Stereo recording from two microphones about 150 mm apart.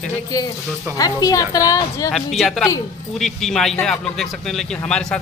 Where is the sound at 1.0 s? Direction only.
25° left (ahead or behind).